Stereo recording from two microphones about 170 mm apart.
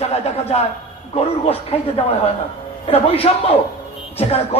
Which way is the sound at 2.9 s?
35° left (ahead or behind).